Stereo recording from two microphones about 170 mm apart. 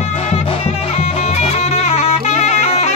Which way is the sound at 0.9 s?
40° left (ahead or behind).